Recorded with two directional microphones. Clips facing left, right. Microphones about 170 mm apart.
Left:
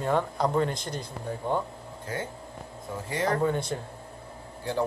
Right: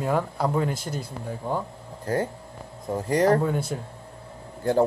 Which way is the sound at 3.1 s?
40° right (ahead or behind).